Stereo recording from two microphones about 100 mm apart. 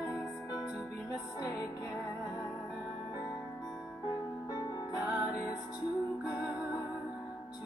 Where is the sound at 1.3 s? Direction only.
40° left (ahead or behind).